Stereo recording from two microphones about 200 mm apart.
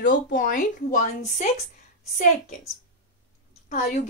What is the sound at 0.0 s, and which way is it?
Speech, 40° left (ahead or behind).